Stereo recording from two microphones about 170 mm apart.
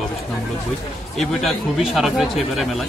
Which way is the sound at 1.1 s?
Centre (ahead or behind).